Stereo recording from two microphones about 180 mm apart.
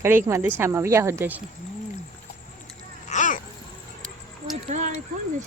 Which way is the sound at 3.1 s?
45° left (ahead or behind).